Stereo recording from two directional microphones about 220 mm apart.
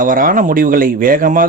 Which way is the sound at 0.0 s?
40° right (ahead or behind).